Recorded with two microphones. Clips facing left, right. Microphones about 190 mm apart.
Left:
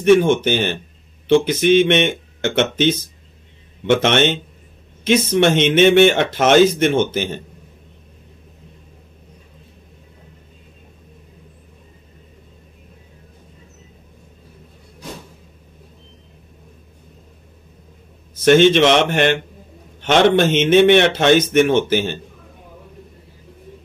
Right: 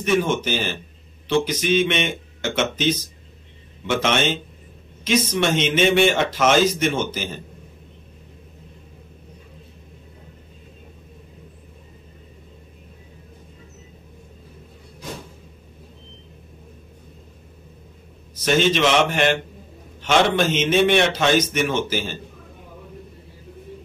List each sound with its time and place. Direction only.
0.0 s a man's voice: 55° left (ahead or behind)
18.4 s a man's voice: 60° left (ahead or behind)